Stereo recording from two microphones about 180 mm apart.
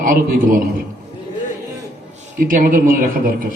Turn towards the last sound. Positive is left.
turn(degrees=-50)  # may be behind; listen again after turning